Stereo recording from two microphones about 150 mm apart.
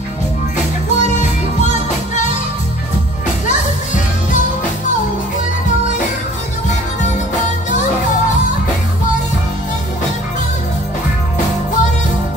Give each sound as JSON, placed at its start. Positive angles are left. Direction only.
{"t": 0.9, "sound": "music", "side_deg": 55}
{"t": 3.4, "sound": "music", "side_deg": 55}